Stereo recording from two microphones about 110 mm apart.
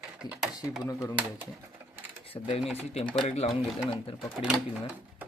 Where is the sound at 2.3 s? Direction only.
65° left (ahead or behind).